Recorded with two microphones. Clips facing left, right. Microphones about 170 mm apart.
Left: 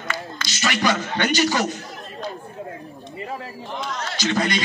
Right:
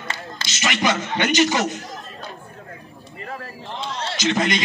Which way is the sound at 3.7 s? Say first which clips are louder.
Right 1 dB; 30° right (ahead or behind).